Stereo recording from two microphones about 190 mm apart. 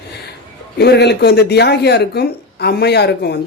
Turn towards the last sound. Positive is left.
turn(degrees=60)  # may be behind; listen again after turning